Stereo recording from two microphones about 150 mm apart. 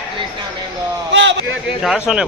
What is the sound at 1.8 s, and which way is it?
Speech, 5° right (ahead or behind).